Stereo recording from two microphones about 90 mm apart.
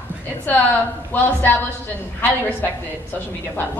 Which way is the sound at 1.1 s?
20° left (ahead or behind).